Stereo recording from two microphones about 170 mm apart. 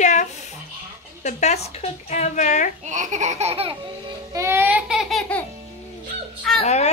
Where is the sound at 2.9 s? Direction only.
45° right (ahead or behind).